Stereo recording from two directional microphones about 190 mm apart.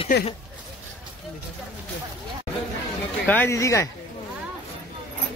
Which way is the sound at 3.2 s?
10° left (ahead or behind).